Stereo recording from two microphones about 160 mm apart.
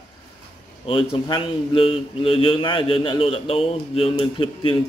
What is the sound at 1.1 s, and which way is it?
A man's voice, 35° left (ahead or behind).